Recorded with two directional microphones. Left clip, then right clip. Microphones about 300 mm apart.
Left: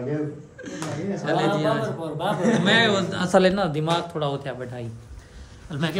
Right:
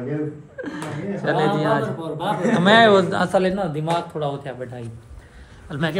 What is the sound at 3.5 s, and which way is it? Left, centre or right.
Speech, centre.